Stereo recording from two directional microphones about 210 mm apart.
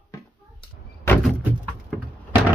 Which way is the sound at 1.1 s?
10° left (ahead or behind).